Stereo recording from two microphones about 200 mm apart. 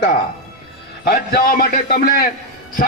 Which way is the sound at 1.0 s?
45° left (ahead or behind).